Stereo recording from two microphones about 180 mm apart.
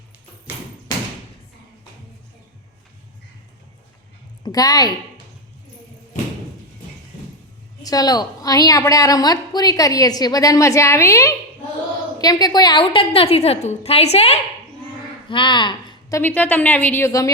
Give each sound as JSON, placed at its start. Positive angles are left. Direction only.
{"t": 4.4, "sound": "a woman's voice", "side_deg": 20}
{"t": 7.8, "sound": "a woman's voice", "side_deg": 20}